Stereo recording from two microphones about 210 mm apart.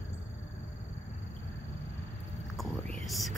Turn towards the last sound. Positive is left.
turn(degrees=0)  # may be behind; listen again after turning